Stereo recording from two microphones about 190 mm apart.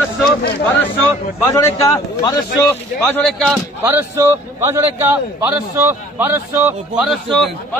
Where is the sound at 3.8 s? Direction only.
15° right (ahead or behind).